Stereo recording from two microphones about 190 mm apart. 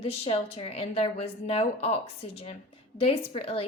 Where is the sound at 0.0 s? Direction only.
30° left (ahead or behind).